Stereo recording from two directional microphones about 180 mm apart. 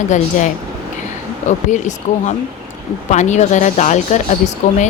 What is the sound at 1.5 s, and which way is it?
Speech, 40° left (ahead or behind).